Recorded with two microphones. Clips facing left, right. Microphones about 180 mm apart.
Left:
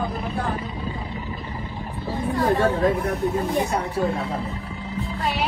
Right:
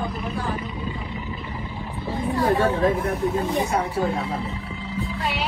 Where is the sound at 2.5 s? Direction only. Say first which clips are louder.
Even; 35° left (ahead or behind).